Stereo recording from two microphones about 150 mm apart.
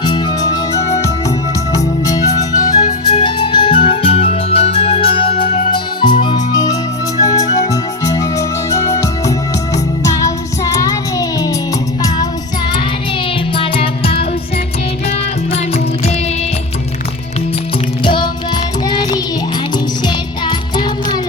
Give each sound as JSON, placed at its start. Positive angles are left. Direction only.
{"t": 0.0, "sound": "music", "side_deg": 30}
{"t": 1.7, "sound": "music", "side_deg": 25}
{"t": 5.7, "sound": "music", "side_deg": 30}
{"t": 13.6, "sound": "music", "side_deg": 35}
{"t": 15.5, "sound": "music", "side_deg": 45}
{"t": 18.0, "sound": "music", "side_deg": 35}
{"t": 20.4, "sound": "music", "side_deg": 30}